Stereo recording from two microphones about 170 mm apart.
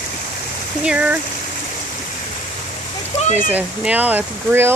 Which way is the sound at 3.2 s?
45° left (ahead or behind).